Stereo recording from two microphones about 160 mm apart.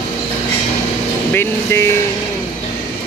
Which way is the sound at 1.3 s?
15° left (ahead or behind).